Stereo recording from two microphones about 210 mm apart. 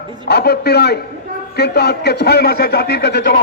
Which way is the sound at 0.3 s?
50° left (ahead or behind).